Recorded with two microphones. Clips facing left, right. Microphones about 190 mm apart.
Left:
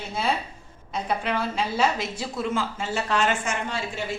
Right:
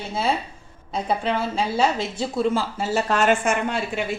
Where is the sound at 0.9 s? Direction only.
30° right (ahead or behind).